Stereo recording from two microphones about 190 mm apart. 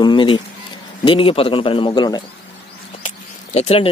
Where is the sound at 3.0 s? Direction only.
35° left (ahead or behind).